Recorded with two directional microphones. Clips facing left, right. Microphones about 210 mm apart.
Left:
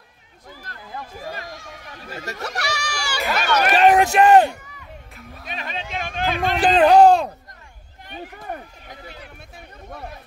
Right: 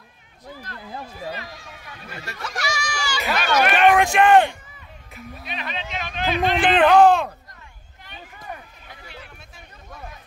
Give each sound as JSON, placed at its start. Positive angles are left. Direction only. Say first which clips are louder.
{"t": 1.1, "sound": "speech", "louder": "even", "side_deg": 45}
{"t": 2.4, "sound": "speech", "louder": "even", "side_deg": 65}
{"t": 3.3, "sound": "a sound", "louder": "left 1 dB", "side_deg": 40}
{"t": 5.4, "sound": "speech", "louder": "left 1 dB", "side_deg": 45}
{"t": 8.1, "sound": "speech", "louder": "left 5 dB", "side_deg": 60}